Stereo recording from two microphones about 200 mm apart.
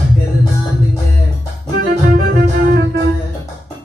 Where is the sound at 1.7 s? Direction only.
50° right (ahead or behind).